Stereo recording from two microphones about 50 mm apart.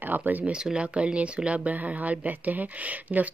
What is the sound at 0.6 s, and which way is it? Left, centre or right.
Speech, right.